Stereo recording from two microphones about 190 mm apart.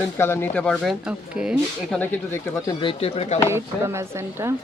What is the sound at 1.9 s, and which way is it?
Speech, 15° left (ahead or behind).